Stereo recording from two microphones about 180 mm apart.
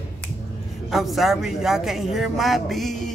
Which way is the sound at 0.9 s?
Centre (ahead or behind).